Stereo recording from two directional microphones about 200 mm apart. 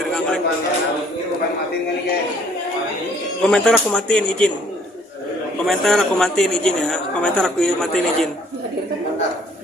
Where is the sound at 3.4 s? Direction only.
5° left (ahead or behind).